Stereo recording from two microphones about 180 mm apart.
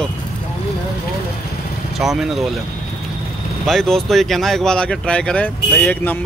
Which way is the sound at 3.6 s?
Centre (ahead or behind).